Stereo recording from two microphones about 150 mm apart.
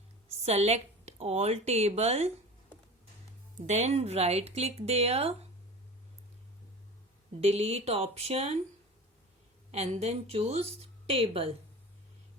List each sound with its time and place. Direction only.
0.4 s a woman's voice: 45° right (ahead or behind)
3.6 s a woman's voice: 50° right (ahead or behind)
7.4 s a woman's voice: 45° right (ahead or behind)
9.7 s a woman's voice: 45° right (ahead or behind)